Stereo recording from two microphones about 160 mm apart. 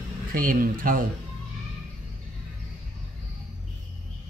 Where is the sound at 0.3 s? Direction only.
60° right (ahead or behind).